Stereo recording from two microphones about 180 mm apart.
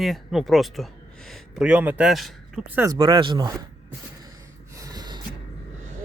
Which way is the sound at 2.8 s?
30° right (ahead or behind).